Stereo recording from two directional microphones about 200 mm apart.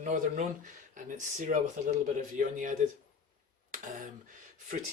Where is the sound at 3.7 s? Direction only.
40° right (ahead or behind).